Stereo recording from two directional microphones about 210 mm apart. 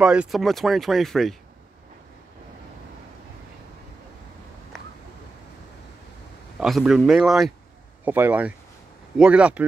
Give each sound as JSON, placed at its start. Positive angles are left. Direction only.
{"t": 0.0, "sound": "speech", "side_deg": -5}
{"t": 6.6, "sound": "speech", "side_deg": 0}